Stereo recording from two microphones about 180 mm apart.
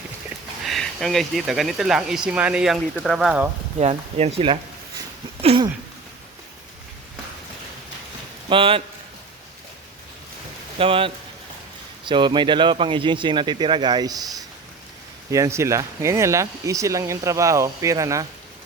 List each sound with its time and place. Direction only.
0.6 s speech: centre (ahead or behind)
3.8 s speech: 35° right (ahead or behind)
5.4 s a sound: 35° right (ahead or behind)
8.4 s speech: 30° right (ahead or behind)
10.8 s speech: 30° right (ahead or behind)
15.3 s speech: 15° right (ahead or behind)